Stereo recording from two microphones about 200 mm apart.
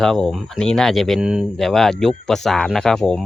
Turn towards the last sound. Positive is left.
turn(degrees=0)  # may be behind; listen again after turning